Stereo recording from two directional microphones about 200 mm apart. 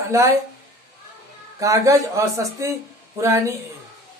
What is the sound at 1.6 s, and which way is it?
A woman's voice, 15° right (ahead or behind).